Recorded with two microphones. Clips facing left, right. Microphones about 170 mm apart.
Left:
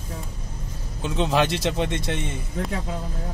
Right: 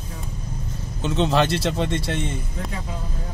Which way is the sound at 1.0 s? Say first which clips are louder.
Right 2 dB; 10° left (ahead or behind).